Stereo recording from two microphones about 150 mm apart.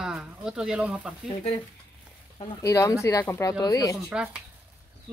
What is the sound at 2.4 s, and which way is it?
A woman's voice, 20° left (ahead or behind).